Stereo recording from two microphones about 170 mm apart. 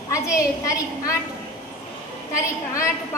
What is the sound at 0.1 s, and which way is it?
A woman's voice, 20° left (ahead or behind).